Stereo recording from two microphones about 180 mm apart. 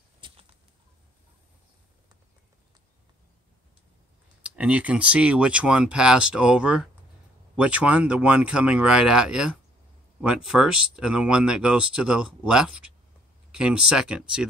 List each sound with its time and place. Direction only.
0.2 s bird flight: 25° right (ahead or behind)
4.4 s speech: 5° right (ahead or behind)